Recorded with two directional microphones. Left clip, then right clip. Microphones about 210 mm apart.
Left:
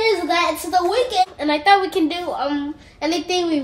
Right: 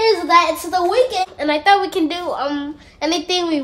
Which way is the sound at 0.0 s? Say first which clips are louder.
Right 4 dB; 5° right (ahead or behind).